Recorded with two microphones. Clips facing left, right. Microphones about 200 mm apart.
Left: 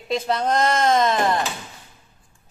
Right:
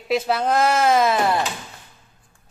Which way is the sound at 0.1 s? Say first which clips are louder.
Right 2 dB; 5° right (ahead or behind).